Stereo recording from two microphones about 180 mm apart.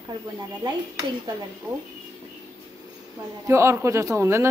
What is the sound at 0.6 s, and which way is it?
Dishes, 20° right (ahead or behind).